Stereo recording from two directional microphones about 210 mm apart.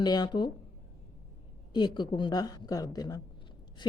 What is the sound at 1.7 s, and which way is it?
A woman's voice, 20° left (ahead or behind).